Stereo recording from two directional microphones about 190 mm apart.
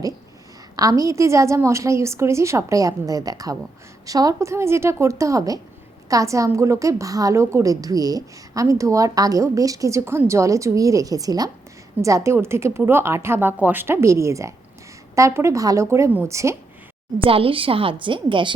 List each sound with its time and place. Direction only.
0.8 s a woman's voice: 20° right (ahead or behind)
17.2 s a woman's voice: 30° right (ahead or behind)